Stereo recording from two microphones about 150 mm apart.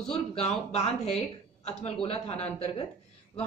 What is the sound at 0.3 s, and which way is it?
Speech, 45° left (ahead or behind).